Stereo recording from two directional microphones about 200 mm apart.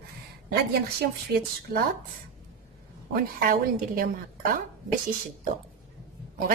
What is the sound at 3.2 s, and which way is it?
Speech, 45° right (ahead or behind).